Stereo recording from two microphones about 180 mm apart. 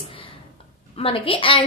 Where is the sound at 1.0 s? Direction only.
30° left (ahead or behind).